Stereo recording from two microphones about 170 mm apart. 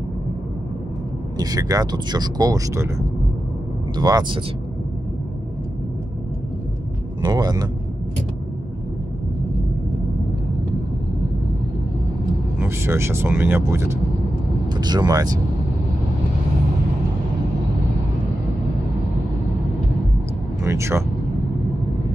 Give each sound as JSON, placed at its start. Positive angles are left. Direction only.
{"t": 1.4, "sound": "speech", "side_deg": -20}
{"t": 3.9, "sound": "speech", "side_deg": -25}
{"t": 7.2, "sound": "speech", "side_deg": -25}
{"t": 12.5, "sound": "speech", "side_deg": -15}
{"t": 20.6, "sound": "speech", "side_deg": -15}